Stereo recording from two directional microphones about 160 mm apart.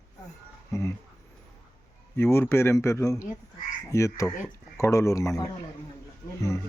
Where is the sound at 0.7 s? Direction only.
15° left (ahead or behind).